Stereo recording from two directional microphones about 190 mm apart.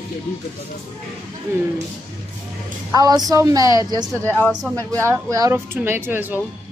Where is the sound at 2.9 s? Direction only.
20° right (ahead or behind).